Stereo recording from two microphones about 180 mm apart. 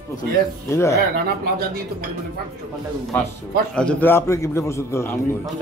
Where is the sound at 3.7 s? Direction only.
5° left (ahead or behind).